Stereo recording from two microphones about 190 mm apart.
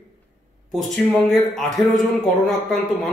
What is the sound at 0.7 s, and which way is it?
Speech, centre (ahead or behind).